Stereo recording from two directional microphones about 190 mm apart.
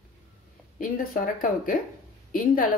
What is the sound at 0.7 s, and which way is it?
A woman's voice, 45° left (ahead or behind).